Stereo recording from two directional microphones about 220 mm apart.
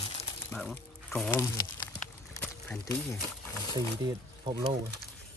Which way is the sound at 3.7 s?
20° right (ahead or behind).